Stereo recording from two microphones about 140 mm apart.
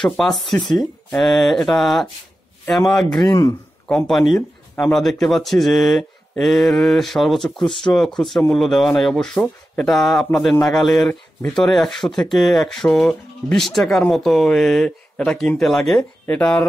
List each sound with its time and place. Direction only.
0.2 s speech: centre (ahead or behind)
3.3 s a man's voice: 20° left (ahead or behind)
3.8 s speech: 5° left (ahead or behind)